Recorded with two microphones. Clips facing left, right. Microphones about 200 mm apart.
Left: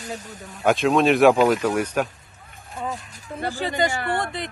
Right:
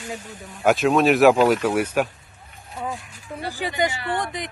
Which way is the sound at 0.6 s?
5° right (ahead or behind).